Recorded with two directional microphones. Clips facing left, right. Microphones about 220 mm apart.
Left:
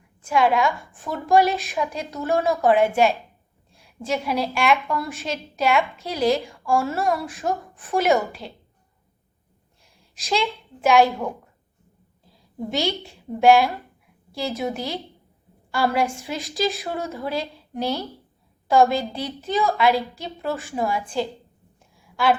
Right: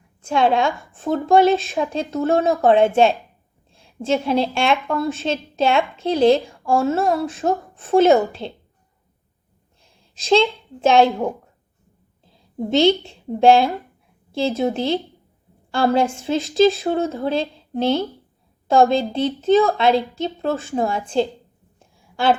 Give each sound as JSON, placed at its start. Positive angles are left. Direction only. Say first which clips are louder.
{"t": 0.2, "sound": "a woman's voice", "louder": "right 2 dB", "side_deg": -25}
{"t": 10.8, "sound": "a woman's voice", "louder": "right 3 dB", "side_deg": -25}